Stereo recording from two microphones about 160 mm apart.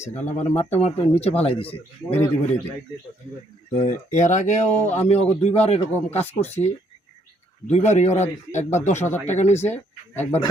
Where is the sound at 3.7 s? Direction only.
50° left (ahead or behind).